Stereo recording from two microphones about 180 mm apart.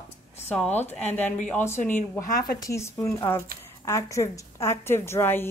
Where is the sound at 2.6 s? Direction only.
15° left (ahead or behind).